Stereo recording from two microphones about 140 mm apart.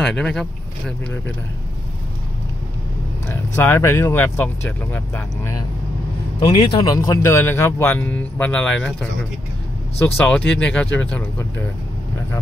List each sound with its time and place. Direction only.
0.0 s speech: 5° left (ahead or behind)
3.3 s speech: 20° left (ahead or behind)
6.7 s speech: 30° left (ahead or behind); by 8.9 s 10° left (ahead or behind)
9.9 s speech: 15° left (ahead or behind)